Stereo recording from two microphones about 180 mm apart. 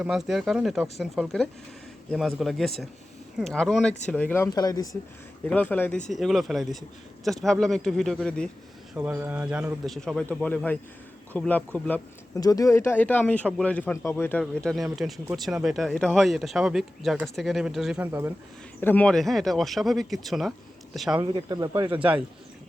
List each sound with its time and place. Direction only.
0.0 s speech: 5° right (ahead or behind); by 4.9 s 20° left (ahead or behind)
5.5 s speech: 10° left (ahead or behind)
9.0 s speech: 10° right (ahead or behind); by 12.4 s 10° left (ahead or behind)
12.4 s speech: 20° left (ahead or behind); by 18.1 s 5° right (ahead or behind)
18.8 s speech: 10° left (ahead or behind)
21.3 s speech: 20° right (ahead or behind)